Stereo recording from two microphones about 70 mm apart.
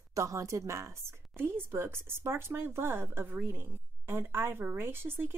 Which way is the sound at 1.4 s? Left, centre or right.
Right.